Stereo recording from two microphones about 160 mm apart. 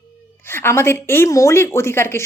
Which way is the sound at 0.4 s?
15° left (ahead or behind).